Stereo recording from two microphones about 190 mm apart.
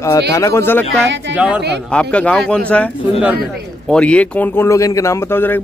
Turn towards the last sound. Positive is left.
turn(degrees=10)  # may be behind; listen again after turning